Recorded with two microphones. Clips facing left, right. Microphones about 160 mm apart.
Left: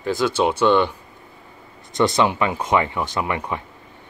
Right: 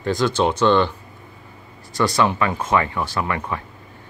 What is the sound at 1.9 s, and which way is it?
Speech, 20° left (ahead or behind).